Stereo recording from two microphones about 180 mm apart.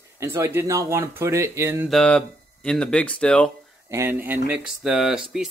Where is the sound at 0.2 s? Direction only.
15° right (ahead or behind).